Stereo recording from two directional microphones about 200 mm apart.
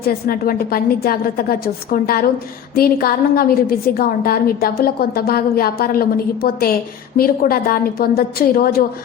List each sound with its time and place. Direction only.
0.0 s a woman's voice: 50° left (ahead or behind)